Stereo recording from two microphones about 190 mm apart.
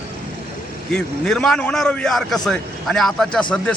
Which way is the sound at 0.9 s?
5° left (ahead or behind).